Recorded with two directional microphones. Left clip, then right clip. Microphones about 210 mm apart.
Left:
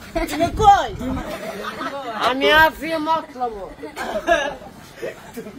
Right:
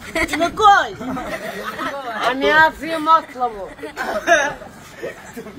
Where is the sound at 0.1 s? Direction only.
55° right (ahead or behind).